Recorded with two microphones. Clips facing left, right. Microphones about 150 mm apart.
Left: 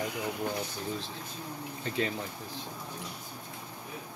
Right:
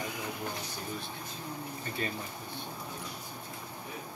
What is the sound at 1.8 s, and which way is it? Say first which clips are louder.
Speech: left 6 dB; 90° left.